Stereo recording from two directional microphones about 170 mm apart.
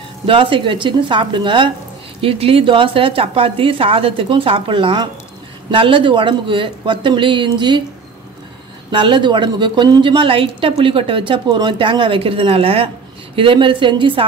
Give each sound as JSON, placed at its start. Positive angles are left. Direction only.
{"t": 0.3, "sound": "a woman's voice", "side_deg": -30}
{"t": 8.9, "sound": "a woman's voice", "side_deg": -30}